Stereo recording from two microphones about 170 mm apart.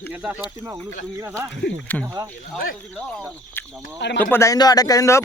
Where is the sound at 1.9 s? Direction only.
10° left (ahead or behind).